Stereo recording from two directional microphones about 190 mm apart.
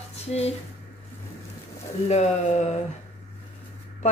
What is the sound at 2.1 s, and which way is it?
Speech, 35° left (ahead or behind).